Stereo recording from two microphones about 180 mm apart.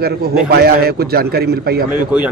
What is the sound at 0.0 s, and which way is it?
A man's voice, 60° right (ahead or behind).